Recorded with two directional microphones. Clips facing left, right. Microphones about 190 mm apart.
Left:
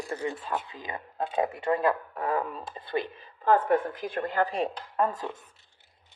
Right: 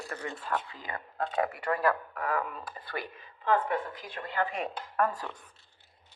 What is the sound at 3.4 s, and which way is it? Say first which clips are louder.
Speech: left 5 dB; 45° left (ahead or behind).